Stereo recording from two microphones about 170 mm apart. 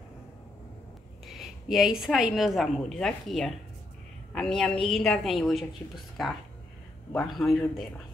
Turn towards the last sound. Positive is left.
turn(degrees=0)  # may be behind; listen again after turning